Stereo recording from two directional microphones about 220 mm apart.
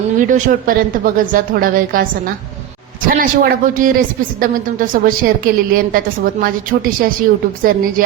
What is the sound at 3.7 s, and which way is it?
A woman's voice, 40° right (ahead or behind).